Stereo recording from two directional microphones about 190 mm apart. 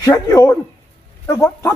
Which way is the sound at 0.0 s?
20° left (ahead or behind).